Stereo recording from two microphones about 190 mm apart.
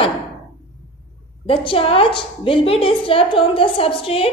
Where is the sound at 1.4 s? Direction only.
30° left (ahead or behind).